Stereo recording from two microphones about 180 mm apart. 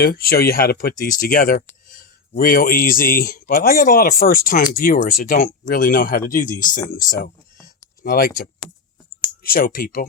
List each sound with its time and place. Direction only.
0.0 s speech: 55° left (ahead or behind)
7.2 s a sound: 15° left (ahead or behind)
8.0 s speech: 55° left (ahead or behind)